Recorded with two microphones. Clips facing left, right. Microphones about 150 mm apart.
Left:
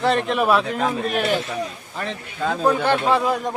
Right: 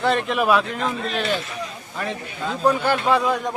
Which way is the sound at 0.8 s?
50° left (ahead or behind).